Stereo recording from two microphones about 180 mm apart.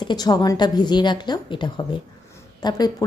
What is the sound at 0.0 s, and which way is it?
A woman's voice, 25° left (ahead or behind).